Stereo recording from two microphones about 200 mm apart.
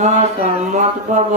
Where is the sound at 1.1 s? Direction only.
40° right (ahead or behind).